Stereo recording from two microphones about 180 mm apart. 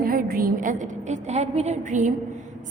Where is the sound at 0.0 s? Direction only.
50° right (ahead or behind).